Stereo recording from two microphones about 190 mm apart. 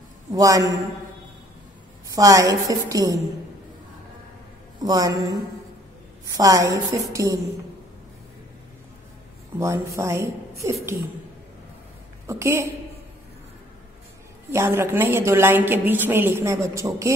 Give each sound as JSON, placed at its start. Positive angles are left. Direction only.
{"t": 0.3, "sound": "a woman's voice", "side_deg": -20}
{"t": 2.1, "sound": "a woman's voice", "side_deg": -20}
{"t": 4.8, "sound": "a woman's voice", "side_deg": -20}
{"t": 9.6, "sound": "a woman's voice", "side_deg": -15}
{"t": 12.3, "sound": "a woman's voice", "side_deg": -15}
{"t": 14.5, "sound": "a woman's voice", "side_deg": -15}